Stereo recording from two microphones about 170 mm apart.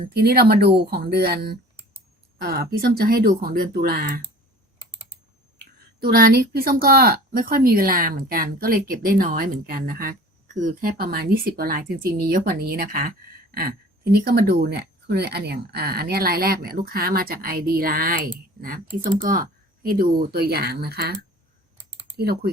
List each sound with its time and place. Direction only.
0.1 s speech: 70° right (ahead or behind)
6.0 s speech: 60° right (ahead or behind)
19.2 s speech: 55° right (ahead or behind)